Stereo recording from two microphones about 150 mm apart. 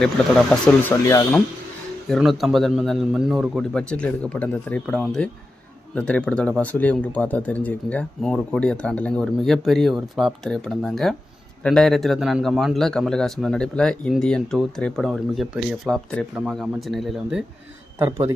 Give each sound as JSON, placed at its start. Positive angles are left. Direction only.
{"t": 0.5, "sound": "a man's voice", "side_deg": 5}
{"t": 0.9, "sound": "speech", "side_deg": 20}
{"t": 2.0, "sound": "a man's voice", "side_deg": 0}
{"t": 18.0, "sound": "a man's voice", "side_deg": -15}